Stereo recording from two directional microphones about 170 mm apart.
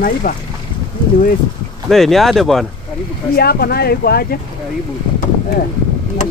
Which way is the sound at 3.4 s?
65° left (ahead or behind).